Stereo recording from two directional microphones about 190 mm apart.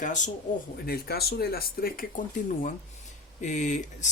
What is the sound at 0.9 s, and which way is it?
Speech, 55° left (ahead or behind).